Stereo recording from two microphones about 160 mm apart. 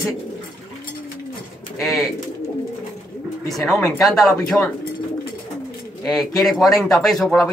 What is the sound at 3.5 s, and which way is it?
Speech, 5° left (ahead or behind).